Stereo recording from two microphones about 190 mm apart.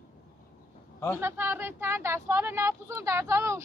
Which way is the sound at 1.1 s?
10° right (ahead or behind).